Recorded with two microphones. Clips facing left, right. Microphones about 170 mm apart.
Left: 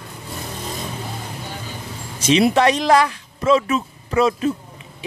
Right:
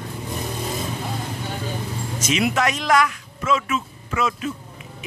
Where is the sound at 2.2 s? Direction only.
30° left (ahead or behind).